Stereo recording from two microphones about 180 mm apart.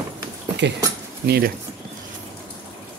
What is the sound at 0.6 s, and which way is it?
Speech, 80° right.